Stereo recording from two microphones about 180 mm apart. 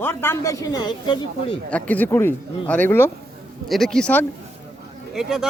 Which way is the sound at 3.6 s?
Centre (ahead or behind).